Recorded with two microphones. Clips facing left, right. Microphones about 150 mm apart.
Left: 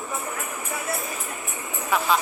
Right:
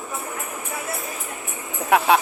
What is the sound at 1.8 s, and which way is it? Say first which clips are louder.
Speech: right 6 dB; 65° right (ahead or behind).